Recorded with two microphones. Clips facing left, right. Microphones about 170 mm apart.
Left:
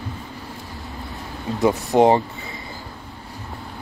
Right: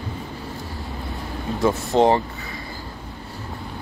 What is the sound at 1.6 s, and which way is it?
Speech, 20° left (ahead or behind).